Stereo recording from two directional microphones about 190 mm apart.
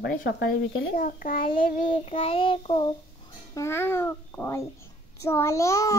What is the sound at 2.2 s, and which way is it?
Speech, 30° left (ahead or behind).